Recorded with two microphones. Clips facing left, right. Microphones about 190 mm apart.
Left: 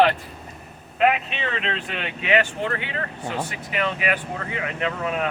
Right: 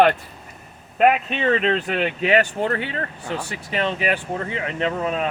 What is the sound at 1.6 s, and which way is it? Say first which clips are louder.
Speech: right 8 dB; 40° right (ahead or behind).